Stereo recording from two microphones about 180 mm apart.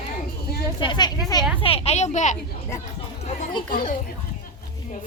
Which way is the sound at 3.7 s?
50° left (ahead or behind).